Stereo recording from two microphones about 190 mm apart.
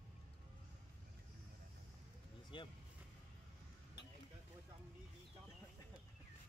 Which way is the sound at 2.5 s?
25° left (ahead or behind).